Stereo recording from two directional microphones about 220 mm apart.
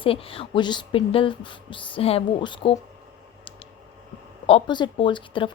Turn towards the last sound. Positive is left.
turn(degrees=20)  # may be behind; listen again after turning